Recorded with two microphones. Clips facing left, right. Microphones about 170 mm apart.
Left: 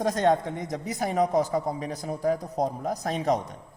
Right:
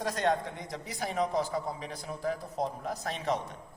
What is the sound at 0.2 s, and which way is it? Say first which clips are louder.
A man's voice: left 4 dB; 45° left (ahead or behind).